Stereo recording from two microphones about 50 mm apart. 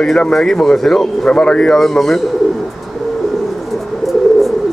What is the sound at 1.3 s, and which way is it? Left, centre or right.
Speech, centre.